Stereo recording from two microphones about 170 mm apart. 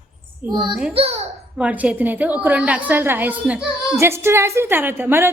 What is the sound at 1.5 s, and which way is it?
A woman's voice, 10° right (ahead or behind).